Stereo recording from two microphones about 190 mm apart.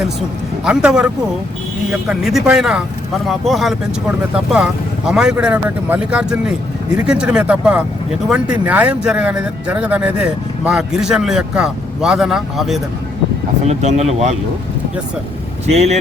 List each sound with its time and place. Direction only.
0.6 s speech: 5° right (ahead or behind)
13.7 s speech: 35° right (ahead or behind)
15.6 s speech: 35° right (ahead or behind)